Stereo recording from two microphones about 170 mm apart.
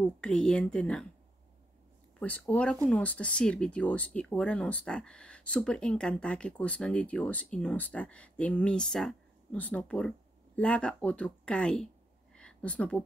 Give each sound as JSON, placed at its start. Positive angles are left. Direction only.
{"t": 0.0, "sound": "speech", "side_deg": 5}
{"t": 2.1, "sound": "speech", "side_deg": 10}
{"t": 12.4, "sound": "a sound", "side_deg": 5}